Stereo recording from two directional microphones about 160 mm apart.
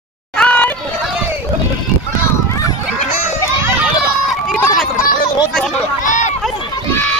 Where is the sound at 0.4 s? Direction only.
10° left (ahead or behind).